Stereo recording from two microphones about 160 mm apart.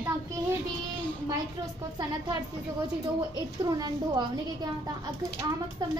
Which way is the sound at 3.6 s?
25° right (ahead or behind).